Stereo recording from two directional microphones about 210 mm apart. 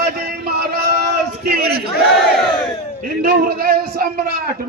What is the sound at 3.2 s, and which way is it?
A man's voice, 45° right (ahead or behind).